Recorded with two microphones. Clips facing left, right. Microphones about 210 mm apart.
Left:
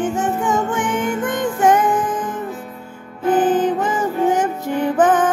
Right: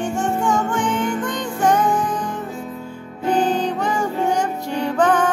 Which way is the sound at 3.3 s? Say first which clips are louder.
Left 4 dB; 20° left (ahead or behind).